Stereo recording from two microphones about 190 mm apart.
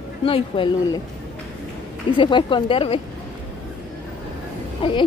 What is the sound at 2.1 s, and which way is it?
Speech, 25° left (ahead or behind).